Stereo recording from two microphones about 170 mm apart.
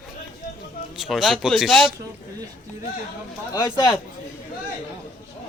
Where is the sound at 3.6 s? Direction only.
25° left (ahead or behind).